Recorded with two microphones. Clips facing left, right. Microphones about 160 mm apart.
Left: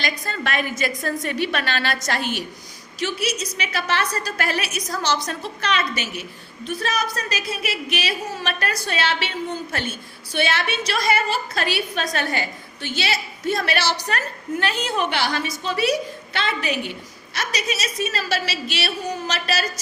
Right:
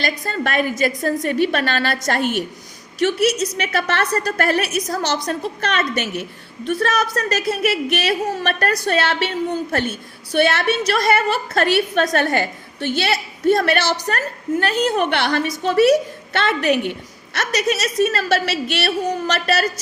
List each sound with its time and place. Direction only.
0.0 s a woman's voice: 45° right (ahead or behind)
10.3 s a woman's voice: 55° right (ahead or behind)